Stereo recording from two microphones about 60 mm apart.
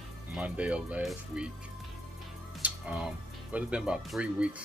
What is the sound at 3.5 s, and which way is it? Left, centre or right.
Speech, right.